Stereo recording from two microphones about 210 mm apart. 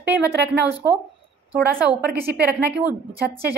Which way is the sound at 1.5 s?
5° right (ahead or behind).